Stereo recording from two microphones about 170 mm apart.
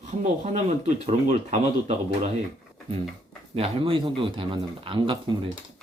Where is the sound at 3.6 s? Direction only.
35° right (ahead or behind).